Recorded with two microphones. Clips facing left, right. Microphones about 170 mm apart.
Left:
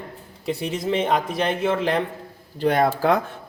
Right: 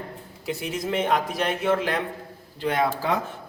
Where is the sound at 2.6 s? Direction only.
45° left (ahead or behind).